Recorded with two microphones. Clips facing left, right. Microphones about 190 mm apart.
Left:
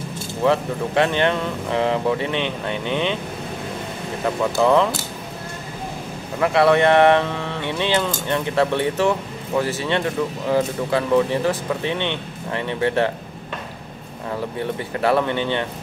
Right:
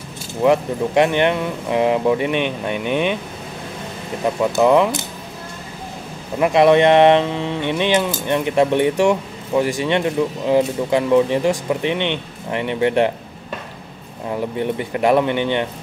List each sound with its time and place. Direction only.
0.4 s speech: 15° right (ahead or behind)
4.5 s speech: 15° right (ahead or behind)
6.4 s speech: 20° right (ahead or behind)
14.6 s speech: 15° right (ahead or behind)